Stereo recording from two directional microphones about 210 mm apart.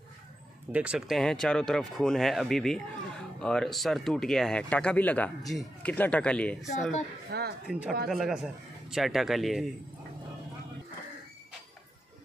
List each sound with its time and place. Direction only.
0.7 s speech: 5° right (ahead or behind)
7.3 s speech: 50° right (ahead or behind)
7.7 s speech: centre (ahead or behind)